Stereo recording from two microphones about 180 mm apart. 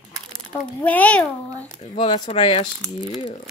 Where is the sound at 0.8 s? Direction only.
5° left (ahead or behind).